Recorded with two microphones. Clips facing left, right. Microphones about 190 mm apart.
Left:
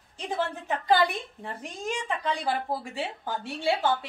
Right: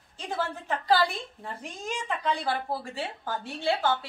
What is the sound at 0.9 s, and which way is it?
A woman's voice, 20° left (ahead or behind).